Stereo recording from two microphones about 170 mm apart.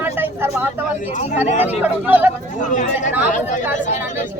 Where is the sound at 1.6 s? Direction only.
10° right (ahead or behind).